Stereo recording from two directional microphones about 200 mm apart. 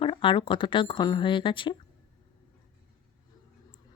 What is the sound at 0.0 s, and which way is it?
A woman's voice, 25° left (ahead or behind).